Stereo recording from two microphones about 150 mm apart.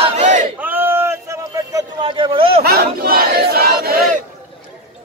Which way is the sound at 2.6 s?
90° right.